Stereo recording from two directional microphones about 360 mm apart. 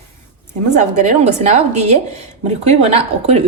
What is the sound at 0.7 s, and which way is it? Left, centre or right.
Speech, centre.